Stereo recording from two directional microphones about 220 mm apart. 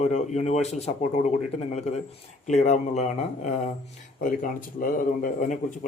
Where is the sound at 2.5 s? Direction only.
30° left (ahead or behind).